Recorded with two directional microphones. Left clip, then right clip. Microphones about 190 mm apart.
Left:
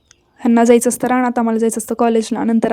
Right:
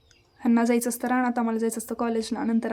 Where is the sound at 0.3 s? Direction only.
40° left (ahead or behind).